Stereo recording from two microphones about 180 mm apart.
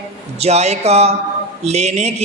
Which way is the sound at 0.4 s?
35° right (ahead or behind).